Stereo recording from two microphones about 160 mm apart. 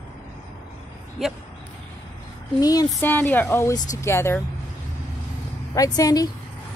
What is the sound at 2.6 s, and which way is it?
Speech, 25° left (ahead or behind).